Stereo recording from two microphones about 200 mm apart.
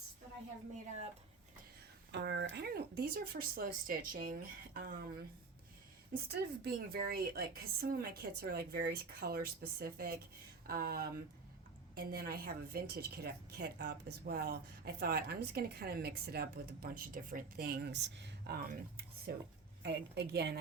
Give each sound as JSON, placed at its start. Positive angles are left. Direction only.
{"t": 2.1, "sound": "a woman's voice", "side_deg": -60}
{"t": 6.1, "sound": "a woman's voice", "side_deg": -45}